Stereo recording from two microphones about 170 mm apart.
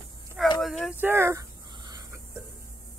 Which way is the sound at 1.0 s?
15° right (ahead or behind).